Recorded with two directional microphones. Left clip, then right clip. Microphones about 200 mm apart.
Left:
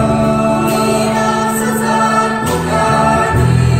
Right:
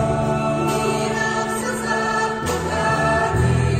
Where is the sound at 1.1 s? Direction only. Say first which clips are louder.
Left 7 dB; centre (ahead or behind).